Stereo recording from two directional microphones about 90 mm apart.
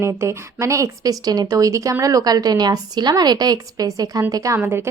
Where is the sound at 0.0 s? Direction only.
30° right (ahead or behind).